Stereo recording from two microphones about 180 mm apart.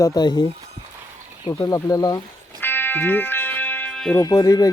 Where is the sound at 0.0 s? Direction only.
20° left (ahead or behind).